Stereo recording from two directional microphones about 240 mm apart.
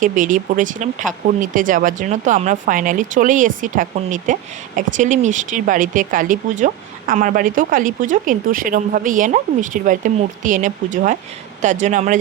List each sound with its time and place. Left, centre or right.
0.0 s speech: right